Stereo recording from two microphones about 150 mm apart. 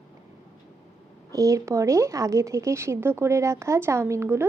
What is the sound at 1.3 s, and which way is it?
A woman's voice, 20° right (ahead or behind).